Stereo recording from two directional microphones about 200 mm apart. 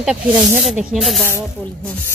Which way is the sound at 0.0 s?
5° right (ahead or behind).